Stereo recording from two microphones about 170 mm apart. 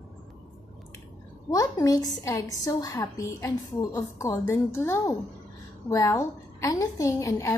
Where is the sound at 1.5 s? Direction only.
20° left (ahead or behind).